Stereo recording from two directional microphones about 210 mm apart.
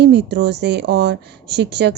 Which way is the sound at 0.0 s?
50° right (ahead or behind).